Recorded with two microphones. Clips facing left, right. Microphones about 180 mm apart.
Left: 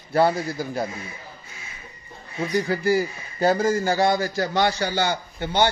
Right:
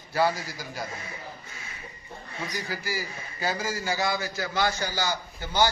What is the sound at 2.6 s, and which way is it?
Speech, 60° left (ahead or behind).